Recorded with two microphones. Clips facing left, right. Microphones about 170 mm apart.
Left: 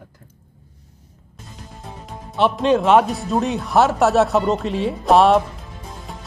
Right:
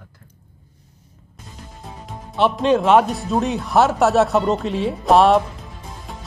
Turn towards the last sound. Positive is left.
turn(degrees=0)  # may be behind; listen again after turning